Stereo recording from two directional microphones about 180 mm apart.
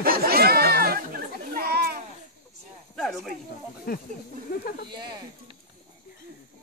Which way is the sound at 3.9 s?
55° left (ahead or behind).